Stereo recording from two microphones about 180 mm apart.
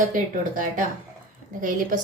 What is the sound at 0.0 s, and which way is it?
Speech, 50° right (ahead or behind).